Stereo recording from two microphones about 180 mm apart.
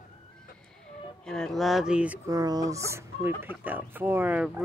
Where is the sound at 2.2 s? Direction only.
20° right (ahead or behind).